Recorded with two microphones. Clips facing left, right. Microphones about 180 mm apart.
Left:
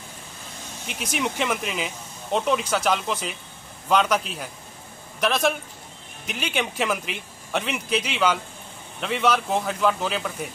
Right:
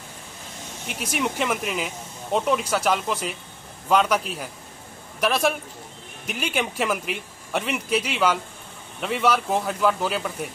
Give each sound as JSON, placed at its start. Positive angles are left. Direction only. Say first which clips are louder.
{"t": 0.8, "sound": "speech", "louder": "right 1 dB", "side_deg": 0}
{"t": 5.2, "sound": "speech", "louder": "even", "side_deg": -5}